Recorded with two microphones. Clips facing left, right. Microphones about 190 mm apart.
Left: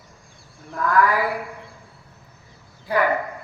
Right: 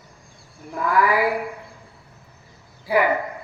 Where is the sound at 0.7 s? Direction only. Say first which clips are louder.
Even; 10° right (ahead or behind).